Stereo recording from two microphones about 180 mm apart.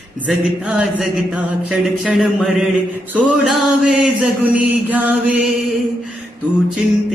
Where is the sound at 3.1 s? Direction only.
Centre (ahead or behind).